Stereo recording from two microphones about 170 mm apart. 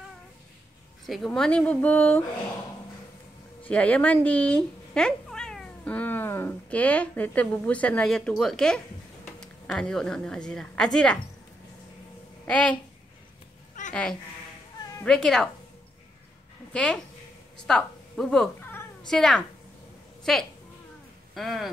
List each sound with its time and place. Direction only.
1.0 s speech: centre (ahead or behind)
3.6 s a woman's voice: 10° left (ahead or behind)
12.4 s a woman's voice: 5° left (ahead or behind)
13.8 s a sound: 45° left (ahead or behind)
15.0 s a woman's voice: 5° left (ahead or behind)
16.7 s a woman's voice: 5° left (ahead or behind)